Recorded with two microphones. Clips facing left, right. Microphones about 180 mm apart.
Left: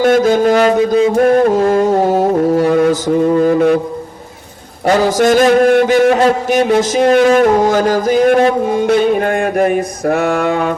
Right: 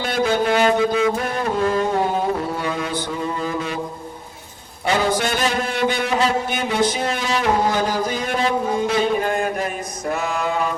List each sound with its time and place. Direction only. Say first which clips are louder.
0.0 s a sound: left 10 dB; 45° left (ahead or behind)
1.1 s music: left 13 dB; 50° left (ahead or behind)
4.9 s music: left 9 dB; 45° left (ahead or behind)
5.5 s music: left 12 dB; 55° left (ahead or behind)
6.7 s a sound: left 9 dB; 90° left; by 7.3 s 70° left (ahead or behind)
7.3 s music: left 9 dB; 45° left (ahead or behind)
8.0 s speech: left 13 dB; 55° left (ahead or behind)
8.9 s mantra: left 9 dB; 70° left (ahead or behind)